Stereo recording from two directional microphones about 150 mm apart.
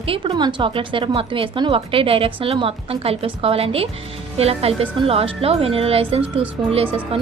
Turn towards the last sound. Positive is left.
turn(degrees=-40)  # may be behind; listen again after turning